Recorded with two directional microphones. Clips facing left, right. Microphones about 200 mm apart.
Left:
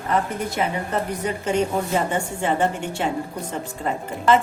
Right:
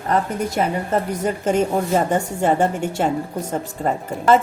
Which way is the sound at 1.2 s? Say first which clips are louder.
Right 2 dB; 45° right (ahead or behind).